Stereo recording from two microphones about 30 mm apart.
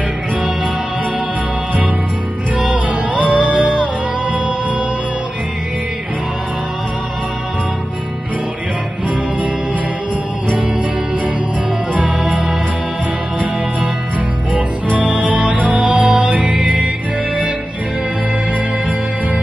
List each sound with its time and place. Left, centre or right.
2.7 s music: right
11.9 s music: right
14.5 s music: right